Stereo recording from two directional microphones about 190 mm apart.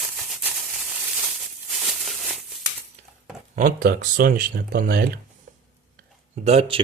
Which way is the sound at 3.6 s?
45° right (ahead or behind).